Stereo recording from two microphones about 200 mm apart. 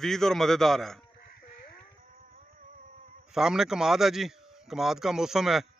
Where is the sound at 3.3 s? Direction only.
Centre (ahead or behind).